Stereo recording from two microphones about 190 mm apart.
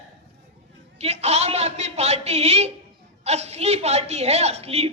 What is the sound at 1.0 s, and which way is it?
A man's voice, 35° right (ahead or behind).